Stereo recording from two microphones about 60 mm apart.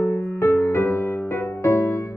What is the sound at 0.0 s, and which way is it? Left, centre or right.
Music, left.